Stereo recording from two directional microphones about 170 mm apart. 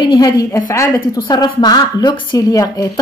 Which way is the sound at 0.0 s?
25° left (ahead or behind).